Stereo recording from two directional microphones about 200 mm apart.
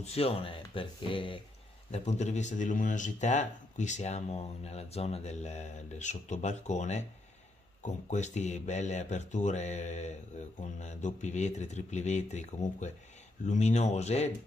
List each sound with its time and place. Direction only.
0.0 s speech: 30° left (ahead or behind)